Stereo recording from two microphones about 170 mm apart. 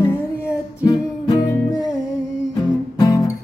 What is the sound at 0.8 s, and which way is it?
Music, 25° left (ahead or behind).